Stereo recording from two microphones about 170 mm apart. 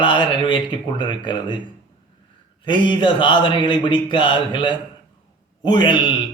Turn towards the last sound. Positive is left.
turn(degrees=25)  # may be behind; listen again after turning